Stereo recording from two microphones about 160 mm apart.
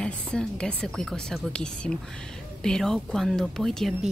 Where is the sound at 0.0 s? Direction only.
5° left (ahead or behind).